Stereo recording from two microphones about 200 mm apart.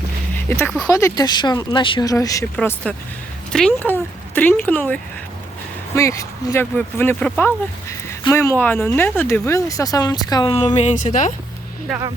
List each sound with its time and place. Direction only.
0.4 s speech: 10° left (ahead or behind)
2.6 s speech: 5° left (ahead or behind)
6.0 s speech: 15° left (ahead or behind); by 11.3 s 40° left (ahead or behind)